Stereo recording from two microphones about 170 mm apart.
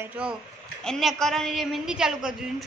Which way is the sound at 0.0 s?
5° right (ahead or behind).